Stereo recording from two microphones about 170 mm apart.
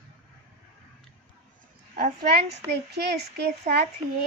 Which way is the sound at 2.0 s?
65° right (ahead or behind).